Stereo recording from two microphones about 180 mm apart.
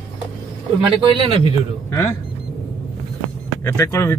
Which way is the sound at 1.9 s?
15° left (ahead or behind).